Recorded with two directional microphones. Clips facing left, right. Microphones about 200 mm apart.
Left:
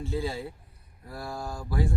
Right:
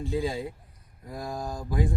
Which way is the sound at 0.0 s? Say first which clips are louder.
Right 3 dB; 15° right (ahead or behind).